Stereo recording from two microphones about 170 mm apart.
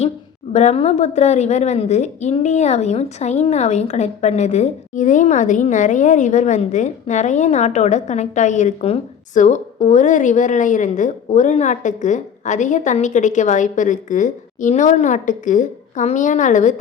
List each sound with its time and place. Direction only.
0.5 s a woman's voice: 40° left (ahead or behind)